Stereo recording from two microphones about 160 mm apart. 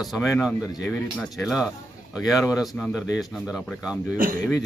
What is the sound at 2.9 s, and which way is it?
Speech, centre (ahead or behind).